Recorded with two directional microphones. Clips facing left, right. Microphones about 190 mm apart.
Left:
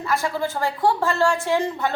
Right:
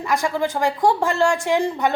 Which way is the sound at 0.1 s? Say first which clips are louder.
Right 3 dB; 15° right (ahead or behind).